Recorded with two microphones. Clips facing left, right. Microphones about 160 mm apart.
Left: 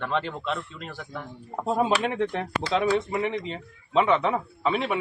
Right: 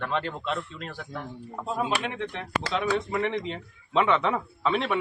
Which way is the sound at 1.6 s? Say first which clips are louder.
Left 5 dB; 40° left (ahead or behind).